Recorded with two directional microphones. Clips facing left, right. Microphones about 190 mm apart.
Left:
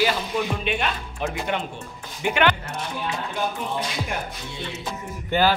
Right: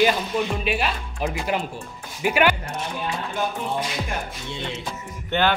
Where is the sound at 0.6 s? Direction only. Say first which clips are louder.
Right 1 dB; 5° right (ahead or behind).